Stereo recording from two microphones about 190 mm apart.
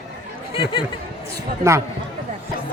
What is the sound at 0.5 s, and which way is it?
Speech, 25° left (ahead or behind).